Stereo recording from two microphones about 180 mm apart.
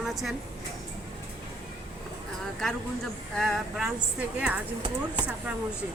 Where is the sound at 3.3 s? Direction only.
Centre (ahead or behind).